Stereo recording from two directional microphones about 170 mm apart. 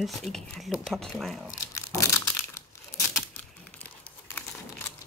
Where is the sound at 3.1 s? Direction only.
10° left (ahead or behind).